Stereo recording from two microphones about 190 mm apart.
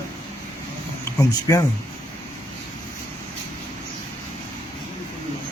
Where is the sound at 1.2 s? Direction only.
20° left (ahead or behind).